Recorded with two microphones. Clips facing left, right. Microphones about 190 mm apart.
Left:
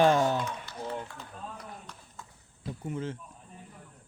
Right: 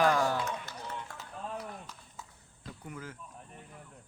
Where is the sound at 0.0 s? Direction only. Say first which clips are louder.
Left 4 dB; 25° left (ahead or behind).